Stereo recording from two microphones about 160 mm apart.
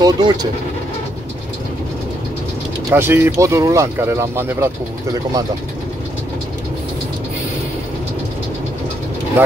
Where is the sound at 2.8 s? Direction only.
15° right (ahead or behind).